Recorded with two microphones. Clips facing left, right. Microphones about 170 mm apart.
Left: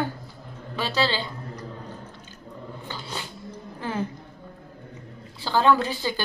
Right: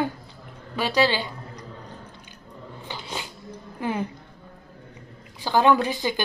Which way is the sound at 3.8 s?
15° right (ahead or behind).